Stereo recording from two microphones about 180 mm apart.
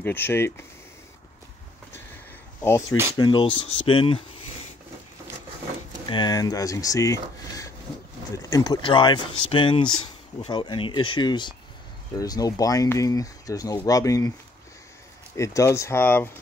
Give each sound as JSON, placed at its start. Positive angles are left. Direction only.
{"t": 0.0, "sound": "speech", "side_deg": 10}
{"t": 3.2, "sound": "speech", "side_deg": 25}
{"t": 6.0, "sound": "speech", "side_deg": 25}
{"t": 15.3, "sound": "speech", "side_deg": 15}